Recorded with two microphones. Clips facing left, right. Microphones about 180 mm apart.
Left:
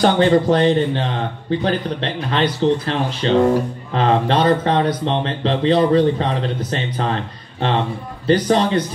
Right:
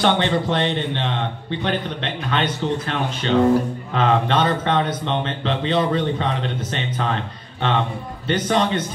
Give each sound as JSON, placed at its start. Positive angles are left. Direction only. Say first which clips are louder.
{"t": 0.0, "sound": "a man's voice", "louder": "left 5 dB", "side_deg": 40}
{"t": 8.3, "sound": "a man's voice", "louder": "left 4 dB", "side_deg": 35}